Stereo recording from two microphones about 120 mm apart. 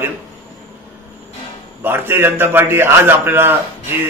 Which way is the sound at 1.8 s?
20° right (ahead or behind).